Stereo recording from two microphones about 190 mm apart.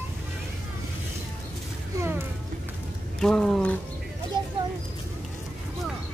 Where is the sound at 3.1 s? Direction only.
5° left (ahead or behind).